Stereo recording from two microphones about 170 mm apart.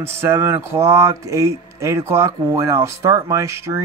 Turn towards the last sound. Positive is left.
turn(degrees=-15)  # may be behind; listen again after turning